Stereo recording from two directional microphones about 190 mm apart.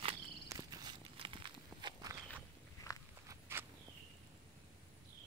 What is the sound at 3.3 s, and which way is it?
Walk, 15° right (ahead or behind).